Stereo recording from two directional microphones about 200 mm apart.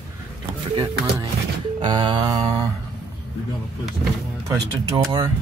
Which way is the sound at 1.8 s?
20° right (ahead or behind).